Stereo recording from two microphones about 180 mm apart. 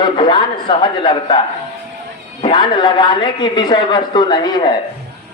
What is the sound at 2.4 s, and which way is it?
A man's voice, 25° left (ahead or behind).